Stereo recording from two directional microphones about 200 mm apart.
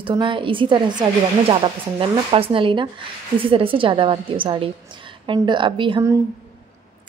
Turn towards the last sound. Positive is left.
turn(degrees=-20)  # may be behind; listen again after turning